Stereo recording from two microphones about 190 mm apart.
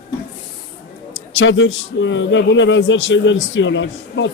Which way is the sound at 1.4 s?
75° left (ahead or behind).